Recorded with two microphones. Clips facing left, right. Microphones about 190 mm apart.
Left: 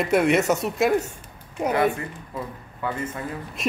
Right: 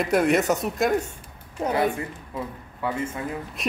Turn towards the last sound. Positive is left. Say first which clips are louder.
# left 1 dB
turn(degrees=0)  # may be behind; listen again after turning